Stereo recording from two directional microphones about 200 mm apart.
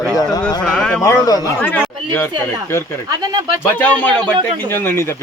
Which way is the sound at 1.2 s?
20° left (ahead or behind).